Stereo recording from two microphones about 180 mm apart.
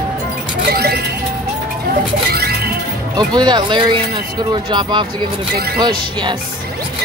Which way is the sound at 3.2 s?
25° right (ahead or behind).